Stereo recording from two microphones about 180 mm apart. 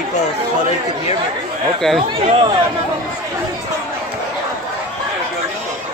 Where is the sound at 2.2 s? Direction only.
35° right (ahead or behind).